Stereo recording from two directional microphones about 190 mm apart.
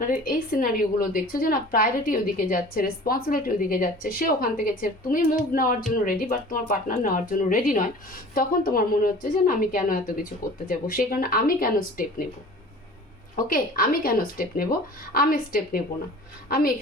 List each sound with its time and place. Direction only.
0.0 s a woman's voice: 45° left (ahead or behind)
13.3 s a woman's voice: 50° left (ahead or behind)